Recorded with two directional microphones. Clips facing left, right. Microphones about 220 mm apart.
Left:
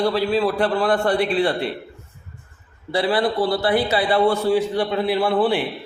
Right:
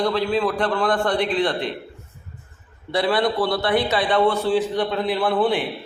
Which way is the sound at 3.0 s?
35° left (ahead or behind).